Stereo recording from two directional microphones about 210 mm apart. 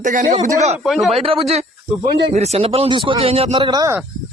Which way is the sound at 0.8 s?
Centre (ahead or behind).